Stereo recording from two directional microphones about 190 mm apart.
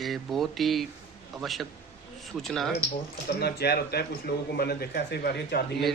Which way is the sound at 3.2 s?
55° left (ahead or behind).